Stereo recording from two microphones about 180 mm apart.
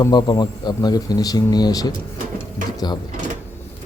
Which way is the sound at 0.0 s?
25° left (ahead or behind).